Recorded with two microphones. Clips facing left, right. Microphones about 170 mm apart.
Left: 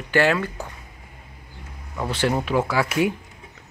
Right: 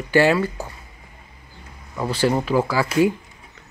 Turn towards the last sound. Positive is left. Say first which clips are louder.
# right 3 dB
turn(degrees=0)  # may be behind; listen again after turning